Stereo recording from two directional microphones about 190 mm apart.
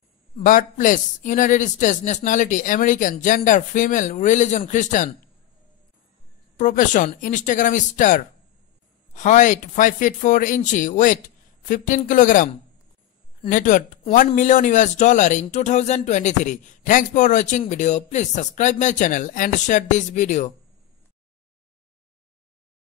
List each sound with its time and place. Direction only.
0.4 s a man's voice: 45° left (ahead or behind)
6.5 s a man's voice: 40° left (ahead or behind)
13.5 s a man's voice: 45° left (ahead or behind)